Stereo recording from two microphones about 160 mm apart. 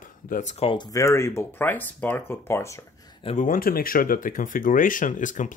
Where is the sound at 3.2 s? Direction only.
45° left (ahead or behind).